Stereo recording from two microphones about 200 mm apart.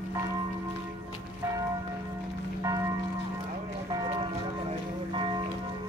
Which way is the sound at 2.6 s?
15° right (ahead or behind).